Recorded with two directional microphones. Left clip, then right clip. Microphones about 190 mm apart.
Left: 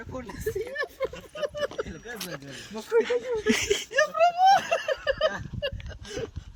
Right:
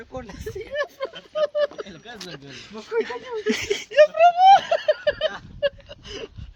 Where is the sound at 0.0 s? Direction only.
40° right (ahead or behind).